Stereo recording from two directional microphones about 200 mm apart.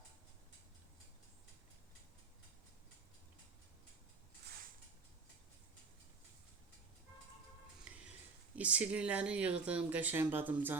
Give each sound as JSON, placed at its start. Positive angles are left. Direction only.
{"t": 8.5, "sound": "speech", "side_deg": -5}